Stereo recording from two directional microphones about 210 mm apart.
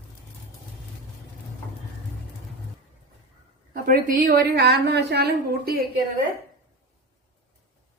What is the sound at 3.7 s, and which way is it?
A woman's voice, 40° right (ahead or behind).